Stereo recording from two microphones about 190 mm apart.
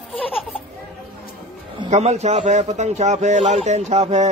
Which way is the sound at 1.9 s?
35° right (ahead or behind).